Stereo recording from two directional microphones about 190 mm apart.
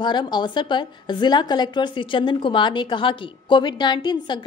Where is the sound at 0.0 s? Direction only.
25° left (ahead or behind).